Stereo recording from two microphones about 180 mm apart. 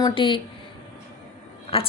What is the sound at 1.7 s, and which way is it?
Speech, 30° left (ahead or behind).